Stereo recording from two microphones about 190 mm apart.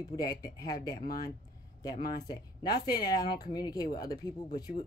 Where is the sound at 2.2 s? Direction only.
20° left (ahead or behind).